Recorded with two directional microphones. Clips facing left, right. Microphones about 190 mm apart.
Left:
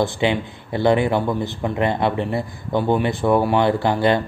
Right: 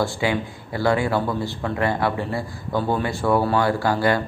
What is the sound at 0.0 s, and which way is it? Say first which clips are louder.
Speech: left 3 dB; 20° left (ahead or behind).